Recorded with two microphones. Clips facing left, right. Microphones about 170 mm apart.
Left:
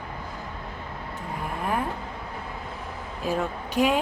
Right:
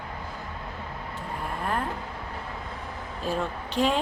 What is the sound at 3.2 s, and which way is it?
Speech, 10° left (ahead or behind).